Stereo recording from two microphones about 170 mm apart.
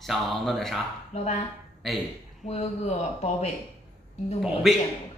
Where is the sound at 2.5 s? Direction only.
40° left (ahead or behind).